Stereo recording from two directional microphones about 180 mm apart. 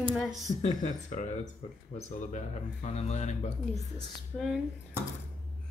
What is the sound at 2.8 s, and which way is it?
Speech, 40° left (ahead or behind).